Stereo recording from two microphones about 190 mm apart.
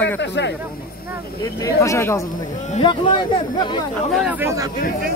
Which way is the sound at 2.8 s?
25° left (ahead or behind).